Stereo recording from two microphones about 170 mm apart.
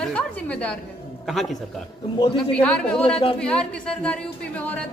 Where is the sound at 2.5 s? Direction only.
5° left (ahead or behind).